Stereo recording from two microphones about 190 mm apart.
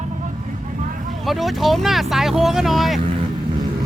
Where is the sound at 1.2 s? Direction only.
Centre (ahead or behind).